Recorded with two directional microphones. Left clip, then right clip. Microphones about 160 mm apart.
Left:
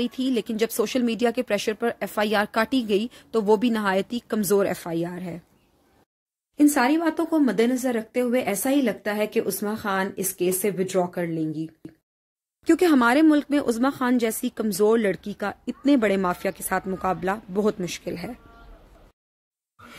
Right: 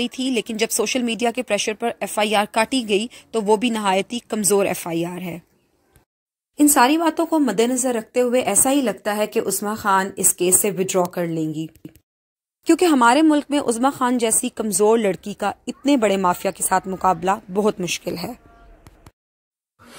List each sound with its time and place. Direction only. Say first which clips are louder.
0.3 s speech: right 3 dB; 10° right (ahead or behind)
6.5 s speech: right 5 dB; 15° right (ahead or behind)